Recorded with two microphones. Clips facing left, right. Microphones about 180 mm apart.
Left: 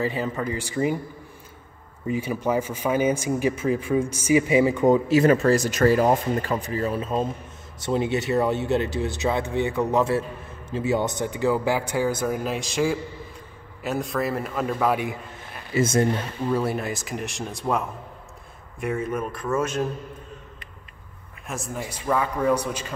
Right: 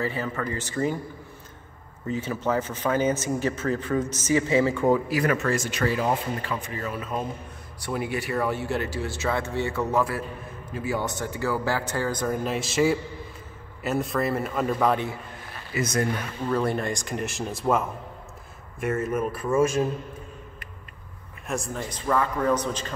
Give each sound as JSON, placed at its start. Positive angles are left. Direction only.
{"t": 0.0, "sound": "speech", "side_deg": 15}
{"t": 2.0, "sound": "speech", "side_deg": 10}
{"t": 15.7, "sound": "speech", "side_deg": 25}
{"t": 16.4, "sound": "speech", "side_deg": 5}
{"t": 21.5, "sound": "speech", "side_deg": 0}